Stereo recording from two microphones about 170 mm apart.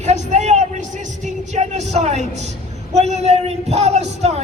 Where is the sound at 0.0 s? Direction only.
45° right (ahead or behind).